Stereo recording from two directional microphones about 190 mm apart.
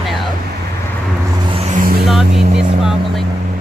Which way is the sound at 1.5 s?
45° right (ahead or behind).